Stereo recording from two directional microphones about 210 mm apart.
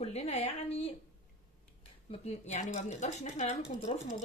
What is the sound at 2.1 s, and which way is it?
Speech, 30° left (ahead or behind).